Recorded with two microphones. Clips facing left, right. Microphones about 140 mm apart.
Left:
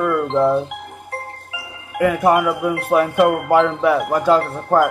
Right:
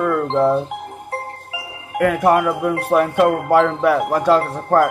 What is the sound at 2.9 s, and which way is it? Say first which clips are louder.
Speech: even; 5° left (ahead or behind).